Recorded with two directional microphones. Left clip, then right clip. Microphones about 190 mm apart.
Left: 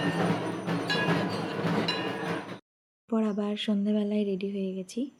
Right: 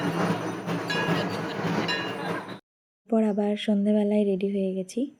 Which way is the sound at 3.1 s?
10° right (ahead or behind).